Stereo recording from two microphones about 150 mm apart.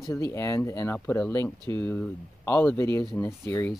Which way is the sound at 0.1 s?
20° left (ahead or behind).